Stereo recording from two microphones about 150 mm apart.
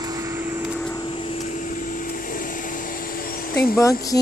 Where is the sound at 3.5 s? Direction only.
20° left (ahead or behind).